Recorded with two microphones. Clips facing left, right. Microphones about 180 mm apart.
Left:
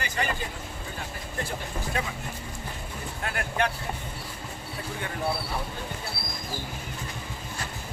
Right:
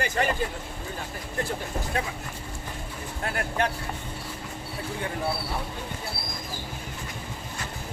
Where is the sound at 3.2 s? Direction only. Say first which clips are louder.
Right 1 dB; 35° right (ahead or behind).